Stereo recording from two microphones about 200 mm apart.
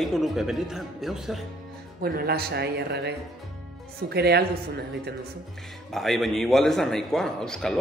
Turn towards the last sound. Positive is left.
turn(degrees=5)  # may be behind; listen again after turning